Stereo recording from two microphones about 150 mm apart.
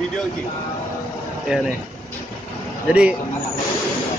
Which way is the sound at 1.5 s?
5° right (ahead or behind).